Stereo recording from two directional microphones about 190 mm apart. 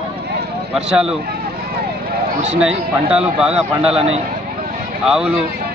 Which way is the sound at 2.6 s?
5° right (ahead or behind).